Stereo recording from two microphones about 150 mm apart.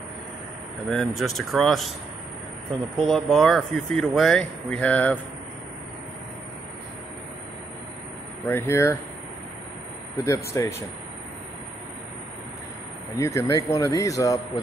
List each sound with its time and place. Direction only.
0.8 s speech: centre (ahead or behind)
3.0 s speech: centre (ahead or behind)
8.5 s speech: 15° left (ahead or behind)
10.2 s speech: 20° left (ahead or behind)
13.1 s speech: 20° left (ahead or behind)